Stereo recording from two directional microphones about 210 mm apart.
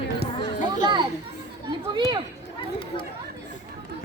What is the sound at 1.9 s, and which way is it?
Speech, 20° right (ahead or behind).